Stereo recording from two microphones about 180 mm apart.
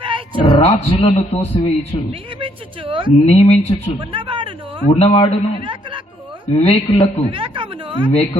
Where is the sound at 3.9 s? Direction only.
30° right (ahead or behind).